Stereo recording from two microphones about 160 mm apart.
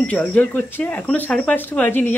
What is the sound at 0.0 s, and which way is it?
Speech, 10° left (ahead or behind).